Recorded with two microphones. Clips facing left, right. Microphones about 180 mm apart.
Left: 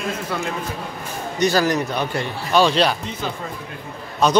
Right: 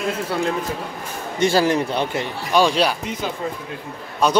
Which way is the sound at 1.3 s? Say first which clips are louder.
Right 1 dB; 25° right (ahead or behind).